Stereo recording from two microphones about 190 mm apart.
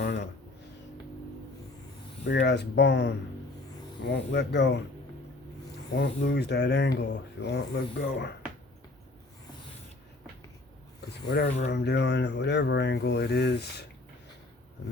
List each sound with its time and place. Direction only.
0.0 s a sound: 65° left (ahead or behind)
2.2 s speech: 65° left (ahead or behind)
6.0 s speech: 60° left (ahead or behind)
11.3 s speech: 60° left (ahead or behind)